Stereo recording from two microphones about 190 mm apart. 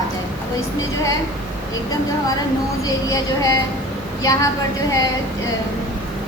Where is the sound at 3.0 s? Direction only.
15° left (ahead or behind).